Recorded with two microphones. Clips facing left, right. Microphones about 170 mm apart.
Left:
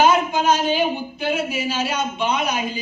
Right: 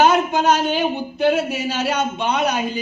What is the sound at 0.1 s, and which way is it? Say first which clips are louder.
A man's voice: right 1 dB; 65° right (ahead or behind).